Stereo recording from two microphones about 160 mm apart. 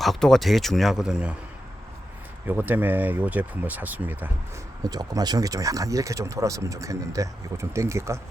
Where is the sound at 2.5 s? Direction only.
10° right (ahead or behind).